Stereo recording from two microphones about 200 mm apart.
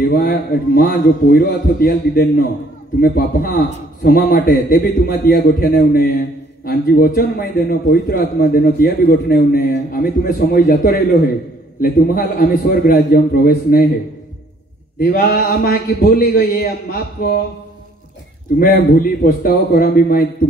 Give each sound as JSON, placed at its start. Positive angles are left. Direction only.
{"t": 0.0, "sound": "a man's voice", "side_deg": 45}
{"t": 15.0, "sound": "a man's voice", "side_deg": 45}
{"t": 18.6, "sound": "a man's voice", "side_deg": 50}